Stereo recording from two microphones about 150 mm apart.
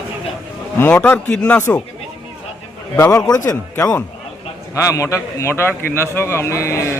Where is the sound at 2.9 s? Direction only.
20° left (ahead or behind).